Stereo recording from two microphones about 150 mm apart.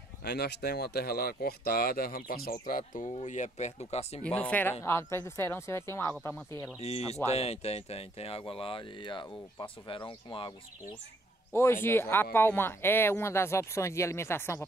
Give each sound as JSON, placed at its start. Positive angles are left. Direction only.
{"t": 0.2, "sound": "speech", "side_deg": 90}
{"t": 3.1, "sound": "speech", "side_deg": 50}
{"t": 4.2, "sound": "speech", "side_deg": 10}
{"t": 6.8, "sound": "speech", "side_deg": 40}
{"t": 11.5, "sound": "speech", "side_deg": 15}